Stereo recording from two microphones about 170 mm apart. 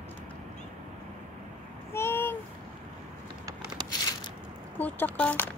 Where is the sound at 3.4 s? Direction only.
25° right (ahead or behind).